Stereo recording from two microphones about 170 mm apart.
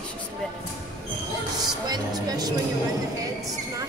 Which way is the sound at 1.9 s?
25° right (ahead or behind).